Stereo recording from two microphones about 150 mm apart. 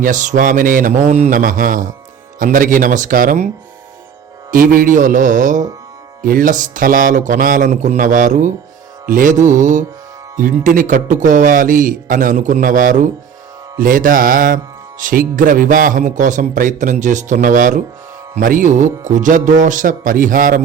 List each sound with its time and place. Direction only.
0.0 s music: 55° right (ahead or behind)
4.5 s music: 70° right (ahead or behind)